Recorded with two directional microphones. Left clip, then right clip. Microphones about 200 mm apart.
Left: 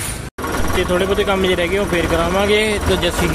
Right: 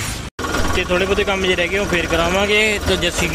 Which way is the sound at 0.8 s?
10° left (ahead or behind).